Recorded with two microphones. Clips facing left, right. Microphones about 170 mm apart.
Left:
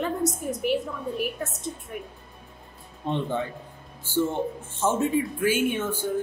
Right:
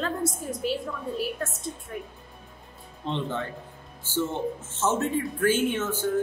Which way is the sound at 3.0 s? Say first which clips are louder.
Left 3 dB; 15° left (ahead or behind).